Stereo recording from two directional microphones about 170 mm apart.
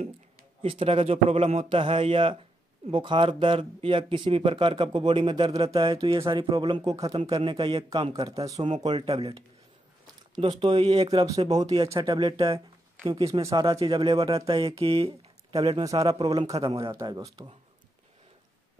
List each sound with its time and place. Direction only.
0.6 s a man's voice: 35° right (ahead or behind)
8.5 s a man's voice: 40° right (ahead or behind)
10.4 s a man's voice: 30° right (ahead or behind)
11.1 s speech: 25° right (ahead or behind)
11.6 s a man's voice: 35° right (ahead or behind)
11.9 s speech: 20° right (ahead or behind)
12.5 s a man's voice: 20° right (ahead or behind)
16.7 s speech: 20° right (ahead or behind)